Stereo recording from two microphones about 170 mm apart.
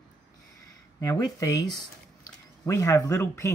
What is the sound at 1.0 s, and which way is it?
Speech, 20° left (ahead or behind).